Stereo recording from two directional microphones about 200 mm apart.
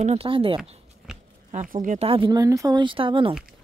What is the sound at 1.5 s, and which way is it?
A woman's voice, 40° right (ahead or behind).